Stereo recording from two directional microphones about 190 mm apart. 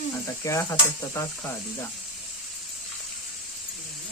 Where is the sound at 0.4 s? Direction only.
15° left (ahead or behind).